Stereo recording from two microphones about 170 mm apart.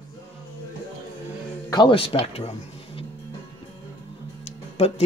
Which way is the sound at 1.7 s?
30° left (ahead or behind).